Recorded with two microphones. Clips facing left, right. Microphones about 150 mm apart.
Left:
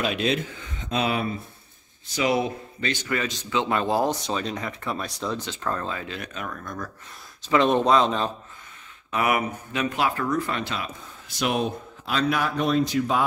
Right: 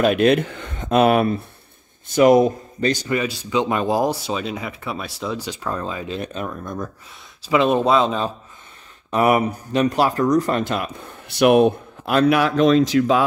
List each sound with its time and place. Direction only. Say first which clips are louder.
0.0 s a man's voice: right 9 dB; 55° right (ahead or behind); by 3.1 s 40° right (ahead or behind)
3.1 s speech: right 5 dB; 15° right (ahead or behind)
7.4 s speech: right 3 dB; 5° right (ahead or behind)
9.1 s speech: right 7 dB; 35° right (ahead or behind); by 13.2 s 90° right